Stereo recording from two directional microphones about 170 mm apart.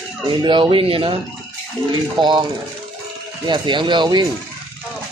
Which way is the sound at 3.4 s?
25° right (ahead or behind).